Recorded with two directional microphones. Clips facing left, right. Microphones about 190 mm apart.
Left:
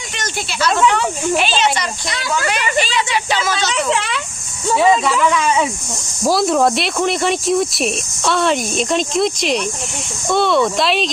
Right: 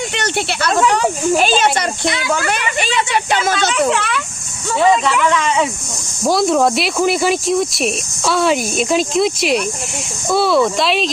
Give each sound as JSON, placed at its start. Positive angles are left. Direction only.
{"t": 0.1, "sound": "speech", "side_deg": -65}
{"t": 0.8, "sound": "speech", "side_deg": -40}
{"t": 1.4, "sound": "speech", "side_deg": -50}
{"t": 3.9, "sound": "speech", "side_deg": 25}
{"t": 5.3, "sound": "speech", "side_deg": 5}